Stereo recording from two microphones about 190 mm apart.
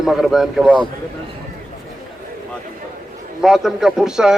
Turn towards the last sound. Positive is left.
turn(degrees=-5)  # may be behind; listen again after turning